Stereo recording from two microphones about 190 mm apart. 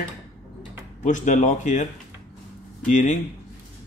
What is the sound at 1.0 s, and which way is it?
Speech, 40° left (ahead or behind).